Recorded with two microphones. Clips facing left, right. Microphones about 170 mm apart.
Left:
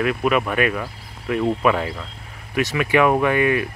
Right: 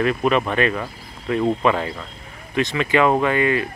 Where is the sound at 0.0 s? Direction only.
5° left (ahead or behind).